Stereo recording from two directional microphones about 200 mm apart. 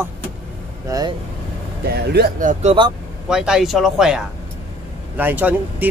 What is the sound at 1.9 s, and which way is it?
Speech, 50° right (ahead or behind).